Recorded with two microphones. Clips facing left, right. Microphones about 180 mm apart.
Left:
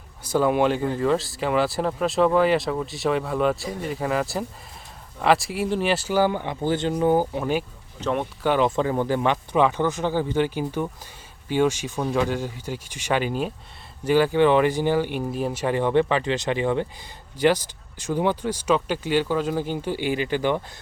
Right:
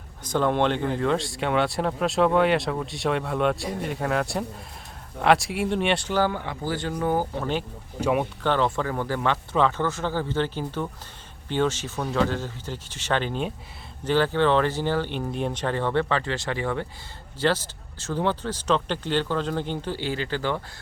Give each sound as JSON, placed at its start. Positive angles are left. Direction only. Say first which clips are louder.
{"t": 0.3, "sound": "speech", "louder": "left 2 dB", "side_deg": 10}
{"t": 8.0, "sound": "speech", "louder": "right 2 dB", "side_deg": -10}
{"t": 8.4, "sound": "speech", "louder": "left 5 dB", "side_deg": 15}